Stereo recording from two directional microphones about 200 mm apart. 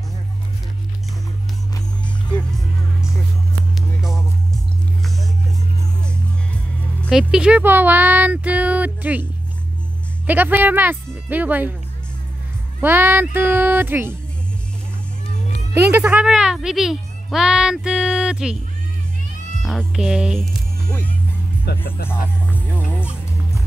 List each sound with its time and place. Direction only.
7.0 s speech: centre (ahead or behind)
12.8 s speech: 10° right (ahead or behind)
15.7 s speech: 10° right (ahead or behind)
19.6 s speech: centre (ahead or behind)
21.8 s speech: 50° left (ahead or behind)
22.5 s music: 10° left (ahead or behind)